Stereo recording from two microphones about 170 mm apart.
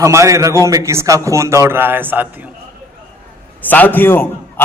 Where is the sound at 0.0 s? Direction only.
15° right (ahead or behind).